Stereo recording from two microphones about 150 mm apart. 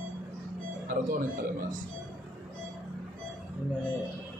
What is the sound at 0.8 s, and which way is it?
Speech, 70° right (ahead or behind).